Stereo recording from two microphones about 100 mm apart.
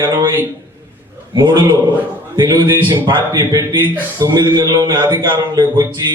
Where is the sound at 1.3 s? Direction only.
50° right (ahead or behind).